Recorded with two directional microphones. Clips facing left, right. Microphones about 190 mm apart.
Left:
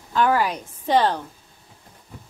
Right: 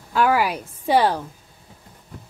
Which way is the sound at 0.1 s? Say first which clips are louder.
Right 1 dB; 10° right (ahead or behind).